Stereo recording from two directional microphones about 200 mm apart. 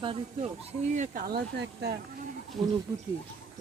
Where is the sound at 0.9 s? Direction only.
40° right (ahead or behind); by 2.0 s 55° right (ahead or behind).